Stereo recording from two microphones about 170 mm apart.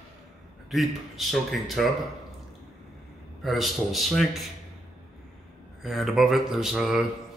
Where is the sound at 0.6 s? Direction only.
Centre (ahead or behind).